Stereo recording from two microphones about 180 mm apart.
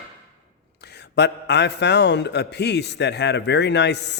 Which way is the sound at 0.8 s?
65° left (ahead or behind).